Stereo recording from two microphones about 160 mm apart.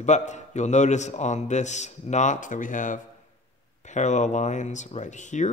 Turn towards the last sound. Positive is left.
turn(degrees=50)  # may be behind; listen again after turning